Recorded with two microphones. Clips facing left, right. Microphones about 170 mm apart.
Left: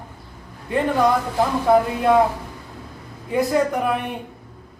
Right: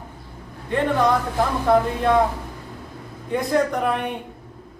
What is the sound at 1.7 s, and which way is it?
Speech, 5° left (ahead or behind).